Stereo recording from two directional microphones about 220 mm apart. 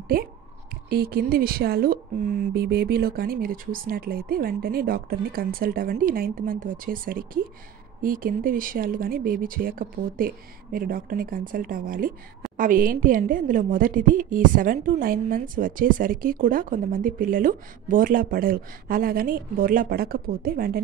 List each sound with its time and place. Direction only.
0.1 s speech: 40° right (ahead or behind)